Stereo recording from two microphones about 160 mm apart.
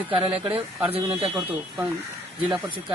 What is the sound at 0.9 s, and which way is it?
Speech, 35° right (ahead or behind).